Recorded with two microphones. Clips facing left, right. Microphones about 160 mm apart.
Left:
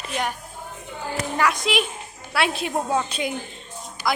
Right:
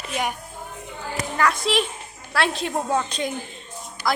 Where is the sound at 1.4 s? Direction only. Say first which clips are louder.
Right 1 dB; 5° left (ahead or behind).